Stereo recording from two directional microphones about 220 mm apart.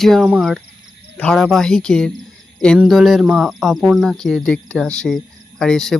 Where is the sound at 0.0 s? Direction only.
Centre (ahead or behind).